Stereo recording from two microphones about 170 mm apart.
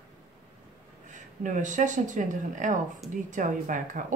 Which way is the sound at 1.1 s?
45° right (ahead or behind).